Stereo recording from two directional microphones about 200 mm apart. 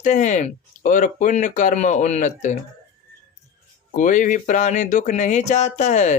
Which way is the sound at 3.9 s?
40° left (ahead or behind).